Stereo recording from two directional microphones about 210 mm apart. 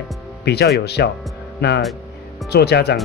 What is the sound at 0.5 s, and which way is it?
Speech, 50° left (ahead or behind).